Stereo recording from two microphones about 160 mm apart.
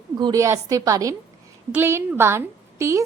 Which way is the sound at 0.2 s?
20° right (ahead or behind).